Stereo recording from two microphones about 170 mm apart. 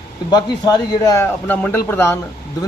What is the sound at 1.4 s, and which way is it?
Speech, 10° left (ahead or behind).